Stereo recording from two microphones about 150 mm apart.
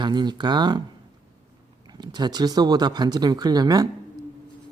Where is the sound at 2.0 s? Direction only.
30° right (ahead or behind).